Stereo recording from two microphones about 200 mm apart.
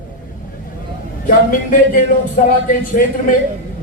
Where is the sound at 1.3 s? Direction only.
45° left (ahead or behind).